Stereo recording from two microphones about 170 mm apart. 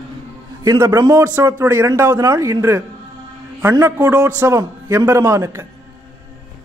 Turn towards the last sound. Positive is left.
turn(degrees=-15)  # may be behind; listen again after turning